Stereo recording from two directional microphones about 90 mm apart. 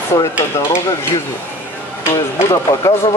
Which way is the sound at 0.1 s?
30° left (ahead or behind).